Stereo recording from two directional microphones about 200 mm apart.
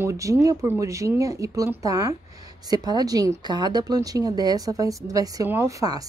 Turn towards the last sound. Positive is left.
turn(degrees=-15)  # may be behind; listen again after turning